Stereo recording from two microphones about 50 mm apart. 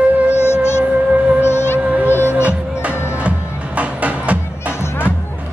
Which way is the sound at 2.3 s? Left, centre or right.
Right.